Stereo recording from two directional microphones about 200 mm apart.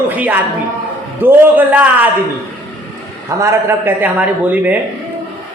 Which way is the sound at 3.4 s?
10° right (ahead or behind).